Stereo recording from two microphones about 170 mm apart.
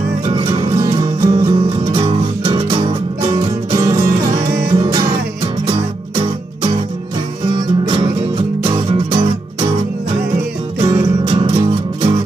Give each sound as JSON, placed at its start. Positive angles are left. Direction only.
{"t": 0.2, "sound": "music", "side_deg": -25}
{"t": 1.9, "sound": "music", "side_deg": -35}
{"t": 3.7, "sound": "music", "side_deg": -20}
{"t": 7.5, "sound": "music", "side_deg": -25}
{"t": 10.8, "sound": "music", "side_deg": -25}